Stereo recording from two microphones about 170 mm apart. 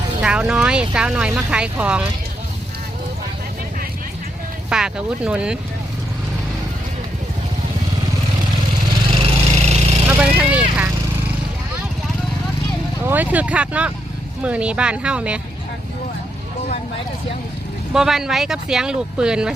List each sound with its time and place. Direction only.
0.2 s speech: 5° right (ahead or behind)
4.7 s speech: 5° right (ahead or behind)
9.6 s a sound: 40° right (ahead or behind)
10.1 s speech: 10° right (ahead or behind)
13.1 s speech: 10° right (ahead or behind)
17.9 s speech: 5° right (ahead or behind)